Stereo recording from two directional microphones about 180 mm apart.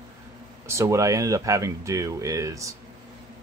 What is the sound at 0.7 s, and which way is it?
Speech, 15° right (ahead or behind).